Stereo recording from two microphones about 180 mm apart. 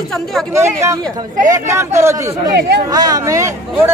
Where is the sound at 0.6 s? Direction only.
15° right (ahead or behind).